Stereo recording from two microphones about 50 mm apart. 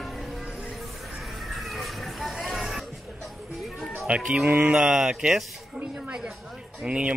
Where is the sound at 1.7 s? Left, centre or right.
Centre.